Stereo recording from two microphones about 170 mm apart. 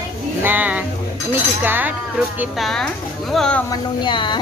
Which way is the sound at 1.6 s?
10° right (ahead or behind).